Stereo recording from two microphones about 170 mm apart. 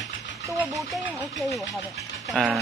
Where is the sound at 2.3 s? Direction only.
Centre (ahead or behind).